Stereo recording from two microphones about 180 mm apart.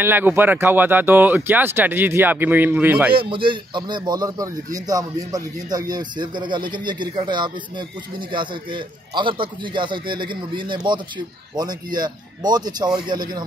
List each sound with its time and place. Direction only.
0.0 s speech: 10° right (ahead or behind)
3.2 s speech: 30° right (ahead or behind)